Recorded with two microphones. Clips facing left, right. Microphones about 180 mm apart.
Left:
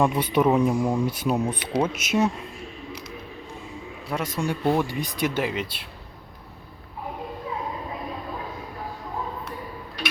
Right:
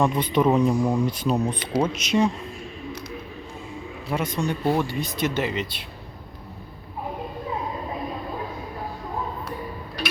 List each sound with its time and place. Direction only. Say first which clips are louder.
0.0 s speech: even; 10° left (ahead or behind)
4.1 s speech: right 1 dB; centre (ahead or behind)